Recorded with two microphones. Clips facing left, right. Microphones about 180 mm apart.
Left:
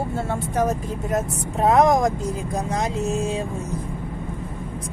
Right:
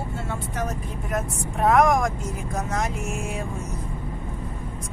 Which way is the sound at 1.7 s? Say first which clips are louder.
Left 2 dB; 30° left (ahead or behind).